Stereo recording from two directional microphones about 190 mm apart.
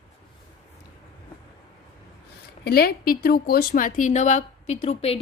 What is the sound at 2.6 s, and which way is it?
Speech, 55° left (ahead or behind).